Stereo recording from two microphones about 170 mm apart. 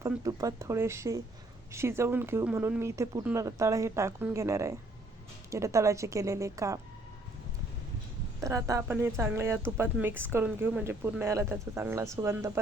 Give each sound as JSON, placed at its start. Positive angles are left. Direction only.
{"t": 0.0, "sound": "speech", "side_deg": -20}
{"t": 8.4, "sound": "speech", "side_deg": -20}